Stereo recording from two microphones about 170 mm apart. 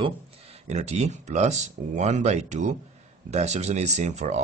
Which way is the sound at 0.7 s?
40° right (ahead or behind).